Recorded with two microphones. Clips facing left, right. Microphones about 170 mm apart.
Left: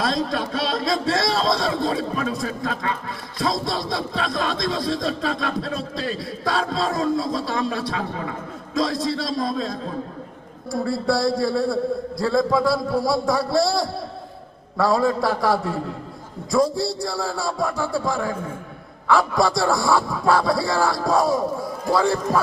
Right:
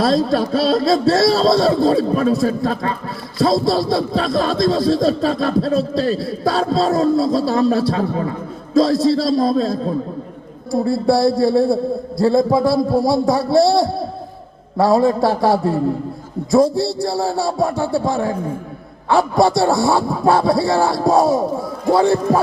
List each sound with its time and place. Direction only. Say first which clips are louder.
0.0 s speech: right 8 dB; 30° right (ahead or behind)